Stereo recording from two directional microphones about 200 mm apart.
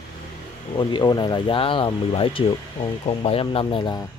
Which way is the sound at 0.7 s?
20° left (ahead or behind).